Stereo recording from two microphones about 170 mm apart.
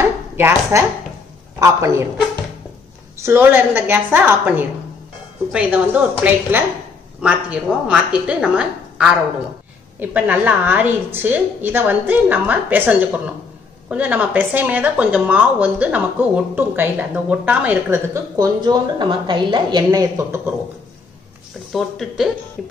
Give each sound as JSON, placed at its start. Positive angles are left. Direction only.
{"t": 0.0, "sound": "chopping", "side_deg": -15}
{"t": 1.6, "sound": "speech", "side_deg": -15}
{"t": 3.2, "sound": "speech", "side_deg": -15}
{"t": 18.6, "sound": "speech", "side_deg": -25}
{"t": 21.7, "sound": "speech", "side_deg": 0}